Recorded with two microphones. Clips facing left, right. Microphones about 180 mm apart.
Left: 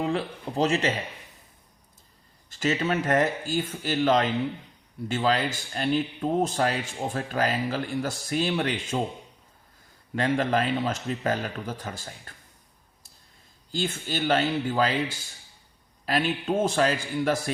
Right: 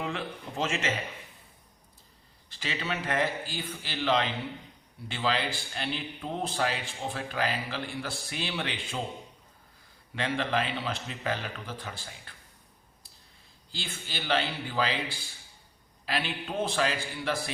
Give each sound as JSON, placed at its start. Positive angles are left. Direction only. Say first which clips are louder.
{"t": 0.0, "sound": "a man's voice", "louder": "left 7 dB", "side_deg": 35}
{"t": 2.5, "sound": "a man's voice", "louder": "left 9 dB", "side_deg": 45}
{"t": 10.2, "sound": "a man's voice", "louder": "left 5 dB", "side_deg": 45}
{"t": 13.7, "sound": "a man's voice", "louder": "left 11 dB", "side_deg": 45}